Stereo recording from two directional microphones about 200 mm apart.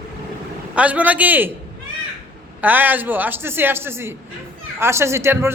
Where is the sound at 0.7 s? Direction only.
5° right (ahead or behind).